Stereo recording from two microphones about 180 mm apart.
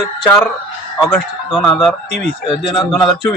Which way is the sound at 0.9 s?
Centre (ahead or behind).